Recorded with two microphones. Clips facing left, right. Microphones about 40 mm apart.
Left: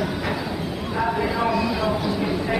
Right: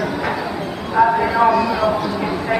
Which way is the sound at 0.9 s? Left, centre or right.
Right.